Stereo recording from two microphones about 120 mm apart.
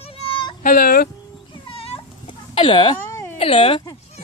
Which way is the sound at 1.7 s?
55° left (ahead or behind).